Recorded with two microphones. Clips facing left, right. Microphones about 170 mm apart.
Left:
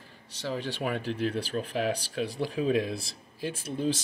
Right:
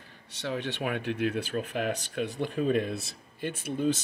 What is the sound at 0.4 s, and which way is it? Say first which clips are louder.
Speech: even; centre (ahead or behind).